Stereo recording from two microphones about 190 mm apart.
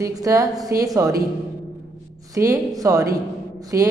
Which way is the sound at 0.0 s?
15° right (ahead or behind).